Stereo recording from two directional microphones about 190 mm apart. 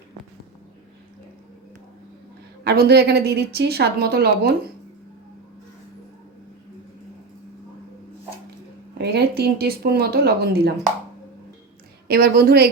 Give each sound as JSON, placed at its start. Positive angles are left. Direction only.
{"t": 2.6, "sound": "a woman's voice", "side_deg": -60}
{"t": 9.0, "sound": "a woman's voice", "side_deg": -55}
{"t": 12.0, "sound": "a woman's voice", "side_deg": -55}